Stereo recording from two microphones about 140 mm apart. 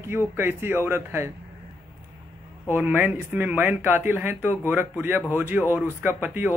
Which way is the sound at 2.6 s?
15° right (ahead or behind).